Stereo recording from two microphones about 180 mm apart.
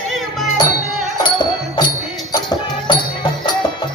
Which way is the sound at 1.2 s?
25° left (ahead or behind).